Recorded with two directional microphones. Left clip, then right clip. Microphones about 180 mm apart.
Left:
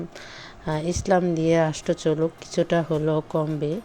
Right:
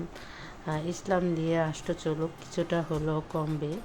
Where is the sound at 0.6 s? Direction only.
35° left (ahead or behind).